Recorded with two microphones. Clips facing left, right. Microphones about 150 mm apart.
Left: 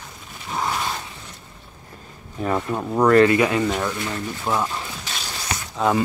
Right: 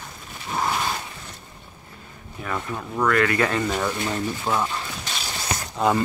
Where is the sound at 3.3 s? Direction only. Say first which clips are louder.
Left 4 dB; 10° left (ahead or behind).